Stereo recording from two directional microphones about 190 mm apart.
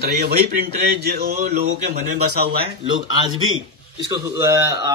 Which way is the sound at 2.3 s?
55° right (ahead or behind).